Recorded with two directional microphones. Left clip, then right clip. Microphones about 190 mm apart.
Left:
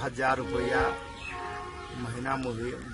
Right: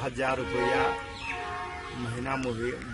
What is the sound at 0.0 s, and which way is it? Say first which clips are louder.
Speech: left 1 dB; 5° left (ahead or behind).